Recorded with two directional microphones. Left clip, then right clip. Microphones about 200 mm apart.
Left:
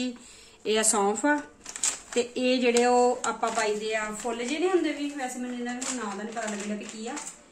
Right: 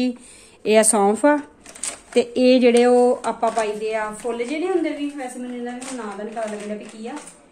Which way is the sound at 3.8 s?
15° right (ahead or behind).